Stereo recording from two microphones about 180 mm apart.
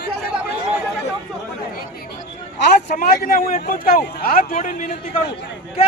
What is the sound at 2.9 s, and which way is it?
Speech, 55° left (ahead or behind).